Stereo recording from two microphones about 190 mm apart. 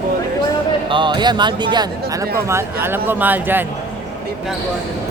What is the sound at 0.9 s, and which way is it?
Speech, 25° right (ahead or behind).